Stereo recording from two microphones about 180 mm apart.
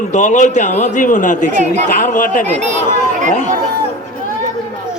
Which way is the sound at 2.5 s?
40° right (ahead or behind).